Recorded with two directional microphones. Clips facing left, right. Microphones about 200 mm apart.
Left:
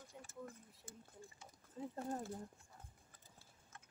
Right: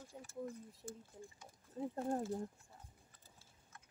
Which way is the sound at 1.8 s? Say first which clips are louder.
Right 5 dB; 50° right (ahead or behind).